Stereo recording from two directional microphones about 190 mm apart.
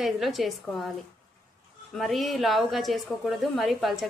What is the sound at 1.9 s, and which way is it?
A woman's voice, centre (ahead or behind).